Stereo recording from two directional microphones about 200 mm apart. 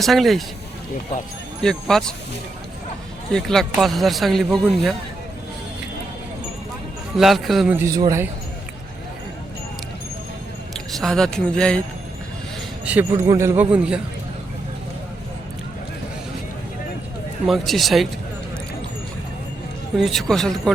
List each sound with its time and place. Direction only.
0.0 s speech: centre (ahead or behind)
1.6 s speech: 5° left (ahead or behind)
3.3 s speech: centre (ahead or behind)
7.2 s speech: centre (ahead or behind)
7.8 s a man's voice: 15° right (ahead or behind)
10.8 s speech: centre (ahead or behind)
12.8 s a man's voice: 5° right (ahead or behind)
17.4 s speech: centre (ahead or behind)
20.0 s speech: centre (ahead or behind)